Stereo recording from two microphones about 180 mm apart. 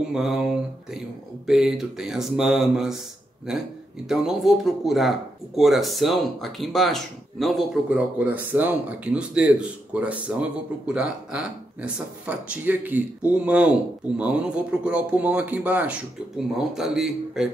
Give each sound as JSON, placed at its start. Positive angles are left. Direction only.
{"t": 0.1, "sound": "speech", "side_deg": 0}
{"t": 4.1, "sound": "speech", "side_deg": 0}